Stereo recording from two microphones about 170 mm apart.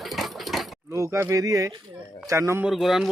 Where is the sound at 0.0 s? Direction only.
Centre (ahead or behind).